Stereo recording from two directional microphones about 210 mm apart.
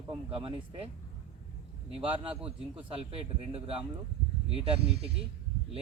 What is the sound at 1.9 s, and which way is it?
Speech, 25° right (ahead or behind).